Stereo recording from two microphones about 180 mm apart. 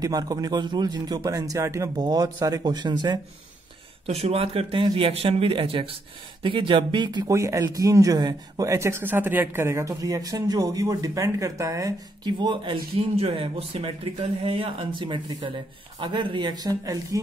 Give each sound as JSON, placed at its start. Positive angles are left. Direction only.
{"t": 0.0, "sound": "speech", "side_deg": -20}
{"t": 4.0, "sound": "speech", "side_deg": -35}